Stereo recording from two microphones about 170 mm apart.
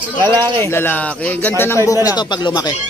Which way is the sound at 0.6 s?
15° left (ahead or behind).